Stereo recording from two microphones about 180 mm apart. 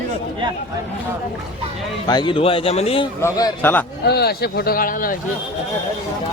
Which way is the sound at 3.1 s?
15° left (ahead or behind).